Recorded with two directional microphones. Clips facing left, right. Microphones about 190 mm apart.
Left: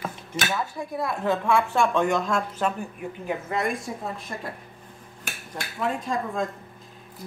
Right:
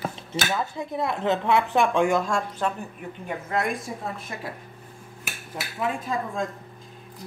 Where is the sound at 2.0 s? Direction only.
Centre (ahead or behind).